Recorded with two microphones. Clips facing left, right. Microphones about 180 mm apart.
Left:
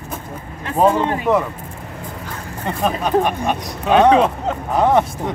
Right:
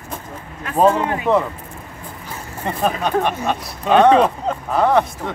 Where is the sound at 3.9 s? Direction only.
Centre (ahead or behind).